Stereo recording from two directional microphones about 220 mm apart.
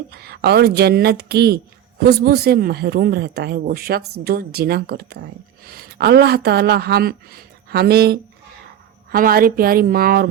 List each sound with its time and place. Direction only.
0.1 s a woman's voice: 45° right (ahead or behind)